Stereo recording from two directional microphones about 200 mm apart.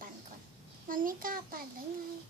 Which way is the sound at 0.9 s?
45° right (ahead or behind).